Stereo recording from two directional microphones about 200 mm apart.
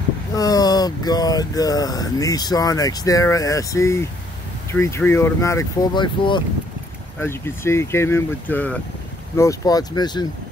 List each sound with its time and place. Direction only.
0.3 s speech: 20° left (ahead or behind)
7.2 s speech: 10° left (ahead or behind)